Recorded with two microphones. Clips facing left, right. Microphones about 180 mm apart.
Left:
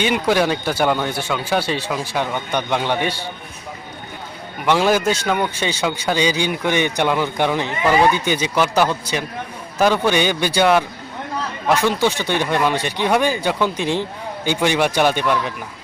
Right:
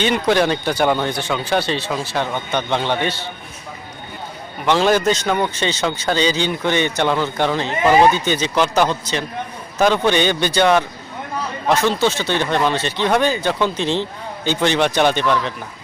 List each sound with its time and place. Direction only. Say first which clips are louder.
0.0 s speech: right 1 dB; 10° left (ahead or behind)
4.6 s speech: right 1 dB; 10° left (ahead or behind)